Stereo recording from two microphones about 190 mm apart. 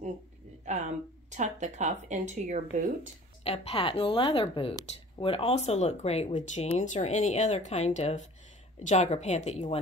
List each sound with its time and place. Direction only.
0.7 s speech: 40° right (ahead or behind)
3.4 s speech: 30° left (ahead or behind)